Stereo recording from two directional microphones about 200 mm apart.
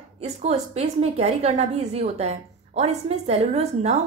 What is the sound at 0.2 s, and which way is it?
A woman's voice, 30° right (ahead or behind).